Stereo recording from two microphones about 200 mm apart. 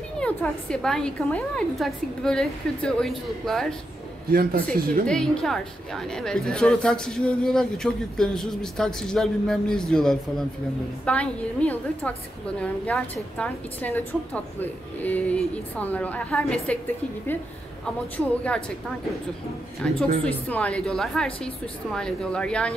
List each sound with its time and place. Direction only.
0.2 s a woman's voice: 5° left (ahead or behind)
4.3 s a man's voice: 50° right (ahead or behind)
5.0 s a woman's voice: 5° left (ahead or behind)
19.8 s a woman's voice: 5° left (ahead or behind)